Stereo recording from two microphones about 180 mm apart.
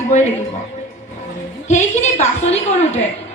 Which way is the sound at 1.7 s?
40° left (ahead or behind).